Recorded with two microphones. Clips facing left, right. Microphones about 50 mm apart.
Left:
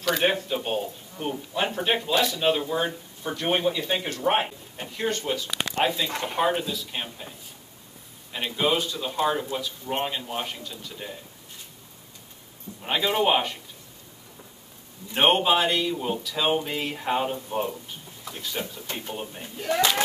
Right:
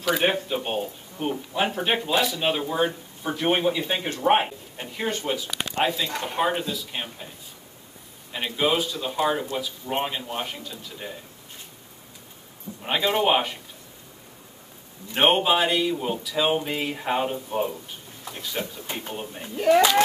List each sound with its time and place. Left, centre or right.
0.0 s speech: centre
5.8 s speech: centre
8.3 s speech: centre
12.8 s speech: centre
15.1 s speech: centre
18.9 s speech: centre